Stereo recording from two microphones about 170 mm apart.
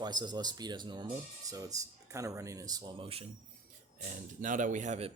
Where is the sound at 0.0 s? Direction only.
25° right (ahead or behind).